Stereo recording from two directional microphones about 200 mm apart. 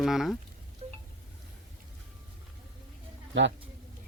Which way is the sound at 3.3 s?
65° right (ahead or behind).